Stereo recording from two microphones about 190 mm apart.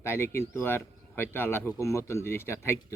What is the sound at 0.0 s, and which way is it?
Speech, 15° left (ahead or behind).